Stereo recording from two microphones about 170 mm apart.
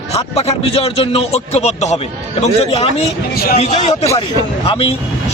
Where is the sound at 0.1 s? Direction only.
35° left (ahead or behind).